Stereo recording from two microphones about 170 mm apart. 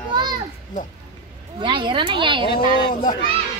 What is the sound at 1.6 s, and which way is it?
Speech, 30° right (ahead or behind).